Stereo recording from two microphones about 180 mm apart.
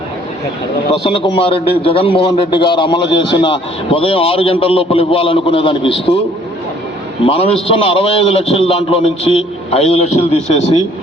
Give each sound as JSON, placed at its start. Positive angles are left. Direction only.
{"t": 0.9, "sound": "a man's voice", "side_deg": 30}
{"t": 7.3, "sound": "a man's voice", "side_deg": 30}